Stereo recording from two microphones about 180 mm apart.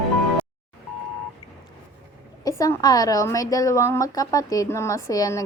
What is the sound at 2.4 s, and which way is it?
A woman's voice, 15° left (ahead or behind).